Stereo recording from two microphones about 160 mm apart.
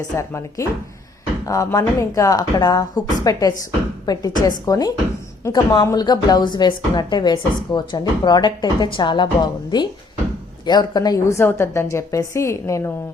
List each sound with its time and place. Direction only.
0.2 s a woman's voice: 20° left (ahead or behind)